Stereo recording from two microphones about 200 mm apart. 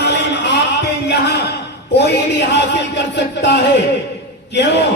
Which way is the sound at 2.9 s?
60° left (ahead or behind).